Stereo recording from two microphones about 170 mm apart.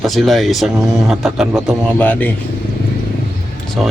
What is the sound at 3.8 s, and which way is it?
Speech, centre (ahead or behind).